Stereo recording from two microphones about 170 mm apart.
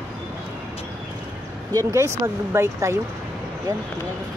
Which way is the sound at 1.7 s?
15° right (ahead or behind).